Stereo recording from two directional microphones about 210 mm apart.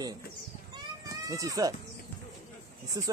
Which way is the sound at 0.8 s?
15° right (ahead or behind).